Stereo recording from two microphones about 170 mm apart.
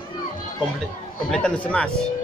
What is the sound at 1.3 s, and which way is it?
Speech, 5° left (ahead or behind).